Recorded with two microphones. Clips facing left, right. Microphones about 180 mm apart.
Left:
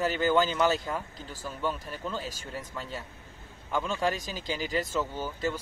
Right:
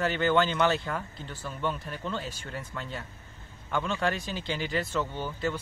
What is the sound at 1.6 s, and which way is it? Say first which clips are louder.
A man's voice: even; 5° left (ahead or behind).